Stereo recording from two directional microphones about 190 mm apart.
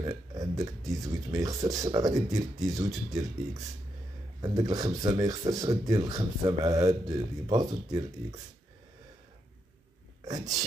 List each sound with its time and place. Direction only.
0.0 s speech: 20° right (ahead or behind)
10.2 s speech: 20° right (ahead or behind)